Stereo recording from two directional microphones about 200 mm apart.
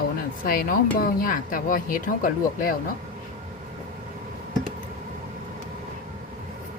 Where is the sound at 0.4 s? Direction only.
45° left (ahead or behind).